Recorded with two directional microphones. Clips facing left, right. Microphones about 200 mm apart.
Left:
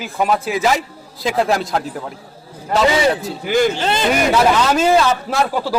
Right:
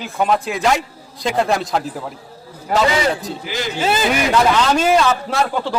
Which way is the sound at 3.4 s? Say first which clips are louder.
Left 11 dB; 50° left (ahead or behind).